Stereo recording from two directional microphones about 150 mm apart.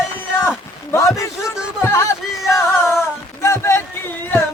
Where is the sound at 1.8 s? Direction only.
15° left (ahead or behind).